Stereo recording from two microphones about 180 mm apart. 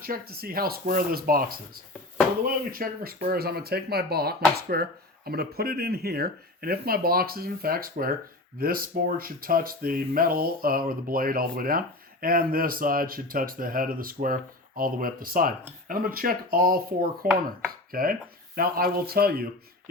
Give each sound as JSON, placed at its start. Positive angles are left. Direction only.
{"t": 0.0, "sound": "speech", "side_deg": -55}